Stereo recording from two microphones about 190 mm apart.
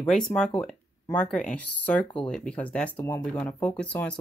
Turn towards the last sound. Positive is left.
turn(degrees=5)  # may be behind; listen again after turning